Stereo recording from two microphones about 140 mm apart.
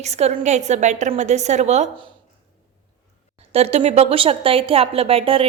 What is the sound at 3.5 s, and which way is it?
A woman's voice, 45° right (ahead or behind).